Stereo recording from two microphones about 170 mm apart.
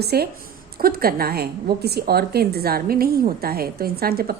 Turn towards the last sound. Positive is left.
turn(degrees=-65)  # may be behind; listen again after turning